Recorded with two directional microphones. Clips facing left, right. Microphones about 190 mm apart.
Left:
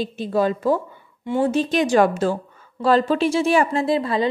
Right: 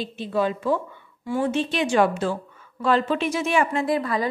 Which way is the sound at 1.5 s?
40° left (ahead or behind).